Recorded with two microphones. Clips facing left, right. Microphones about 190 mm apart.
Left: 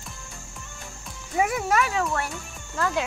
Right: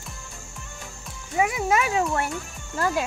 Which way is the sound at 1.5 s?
20° right (ahead or behind).